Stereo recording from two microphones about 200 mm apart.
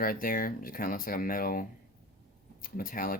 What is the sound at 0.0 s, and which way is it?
Speech, 45° left (ahead or behind).